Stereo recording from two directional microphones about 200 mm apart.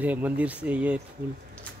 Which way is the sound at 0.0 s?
10° right (ahead or behind).